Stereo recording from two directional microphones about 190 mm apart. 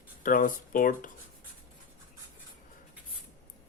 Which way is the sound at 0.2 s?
45° left (ahead or behind).